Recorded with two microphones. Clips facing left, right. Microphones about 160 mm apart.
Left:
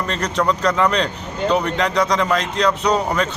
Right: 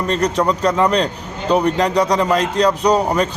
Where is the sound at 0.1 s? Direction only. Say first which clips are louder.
Right 4 dB; 35° right (ahead or behind).